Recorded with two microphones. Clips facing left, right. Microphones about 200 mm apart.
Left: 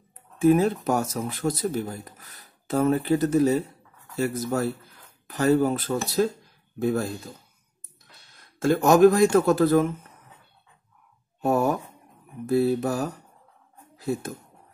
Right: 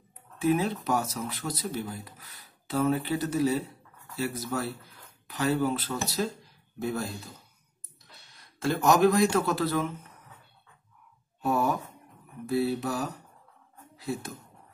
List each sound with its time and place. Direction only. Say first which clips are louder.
0.4 s speech: left 7 dB; 45° left (ahead or behind)
8.4 s speech: left 6 dB; 50° left (ahead or behind)
11.4 s speech: left 4 dB; 50° left (ahead or behind)